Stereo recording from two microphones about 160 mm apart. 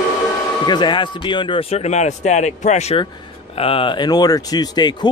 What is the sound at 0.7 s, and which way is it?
Speech, 30° left (ahead or behind).